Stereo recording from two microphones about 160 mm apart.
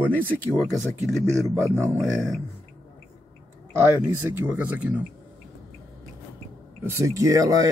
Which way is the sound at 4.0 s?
10° right (ahead or behind).